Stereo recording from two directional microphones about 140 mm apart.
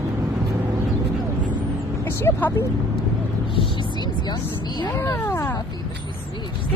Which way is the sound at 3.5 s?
30° left (ahead or behind).